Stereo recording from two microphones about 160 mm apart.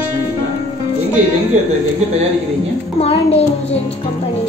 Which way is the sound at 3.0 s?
40° left (ahead or behind).